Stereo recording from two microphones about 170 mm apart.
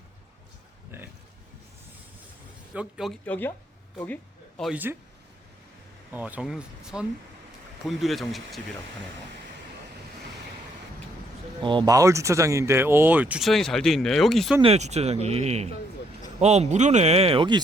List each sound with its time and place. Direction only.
0.9 s a sound: 15° right (ahead or behind)
2.7 s speech: centre (ahead or behind)
3.2 s speech: 10° left (ahead or behind)
3.9 s a sound: 10° left (ahead or behind)
4.7 s speech: 10° right (ahead or behind)
6.1 s speech: 10° right (ahead or behind)
11.6 s speech: 30° right (ahead or behind); by 14.5 s centre (ahead or behind)
14.6 s speech: 40° right (ahead or behind)